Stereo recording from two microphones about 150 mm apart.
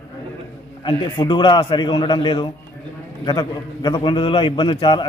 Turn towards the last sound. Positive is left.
turn(degrees=30)  # may be behind; listen again after turning